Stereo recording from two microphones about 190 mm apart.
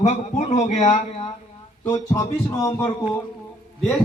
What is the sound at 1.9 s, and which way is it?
Speech, 20° left (ahead or behind).